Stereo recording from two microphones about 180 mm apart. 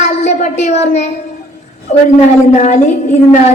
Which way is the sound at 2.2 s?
40° left (ahead or behind).